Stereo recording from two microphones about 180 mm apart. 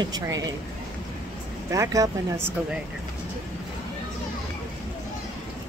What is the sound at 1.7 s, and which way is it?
Speech, 20° right (ahead or behind).